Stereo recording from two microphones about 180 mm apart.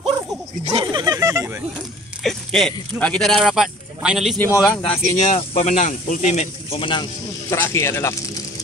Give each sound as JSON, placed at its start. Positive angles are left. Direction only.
{"t": 0.7, "sound": "speech", "side_deg": -20}
{"t": 2.2, "sound": "speech", "side_deg": 0}
{"t": 4.4, "sound": "speech", "side_deg": 15}
{"t": 5.1, "sound": "speech", "side_deg": 40}
{"t": 7.5, "sound": "speech", "side_deg": 15}